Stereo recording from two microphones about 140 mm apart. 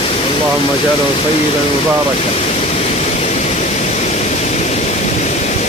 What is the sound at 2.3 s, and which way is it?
Pink noise, 50° left (ahead or behind).